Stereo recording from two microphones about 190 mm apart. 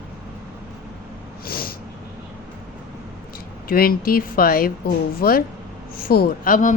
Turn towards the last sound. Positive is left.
turn(degrees=45)  # may be behind; listen again after turning